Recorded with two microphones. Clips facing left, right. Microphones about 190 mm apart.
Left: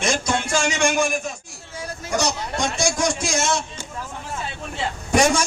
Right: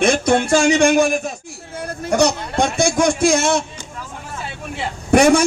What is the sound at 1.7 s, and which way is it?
Speech, 55° right (ahead or behind).